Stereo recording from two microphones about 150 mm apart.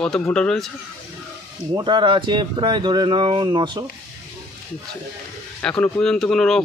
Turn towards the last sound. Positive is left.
turn(degrees=0)  # may be behind; listen again after turning